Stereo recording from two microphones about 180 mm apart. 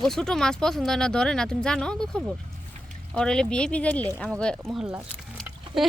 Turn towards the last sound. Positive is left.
turn(degrees=0)  # may be behind; listen again after turning